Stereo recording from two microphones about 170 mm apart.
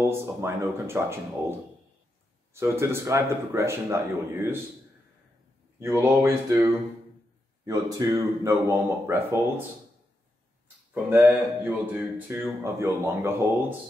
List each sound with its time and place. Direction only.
0.0 s speech: 15° right (ahead or behind)
2.5 s speech: 15° right (ahead or behind)
5.8 s speech: 15° right (ahead or behind)
11.1 s speech: 10° right (ahead or behind)